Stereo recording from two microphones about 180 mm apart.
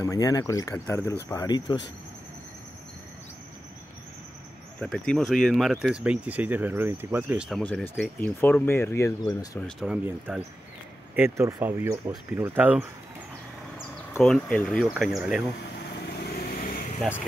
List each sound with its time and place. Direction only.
0.0 s speech: 20° left (ahead or behind)
4.7 s speech: centre (ahead or behind)
7.6 s speech: 5° left (ahead or behind)
9.6 s speech: centre (ahead or behind)
10.0 s speech: 10° right (ahead or behind)
14.2 s speech: 5° left (ahead or behind)
16.3 s vehicle: 55° left (ahead or behind)